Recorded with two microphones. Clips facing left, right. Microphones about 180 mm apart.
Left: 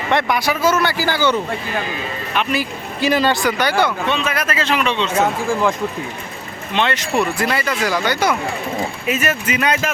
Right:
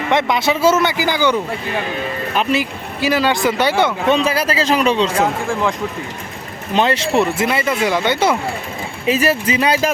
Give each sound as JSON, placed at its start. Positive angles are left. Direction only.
{"t": 0.1, "sound": "speech", "side_deg": -20}
{"t": 3.0, "sound": "speech", "side_deg": -5}
{"t": 3.4, "sound": "speech", "side_deg": -25}
{"t": 4.0, "sound": "speech", "side_deg": -40}
{"t": 5.2, "sound": "speech", "side_deg": 0}
{"t": 6.7, "sound": "speech", "side_deg": -35}